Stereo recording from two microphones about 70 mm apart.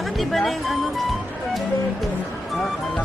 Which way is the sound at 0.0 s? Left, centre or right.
Centre.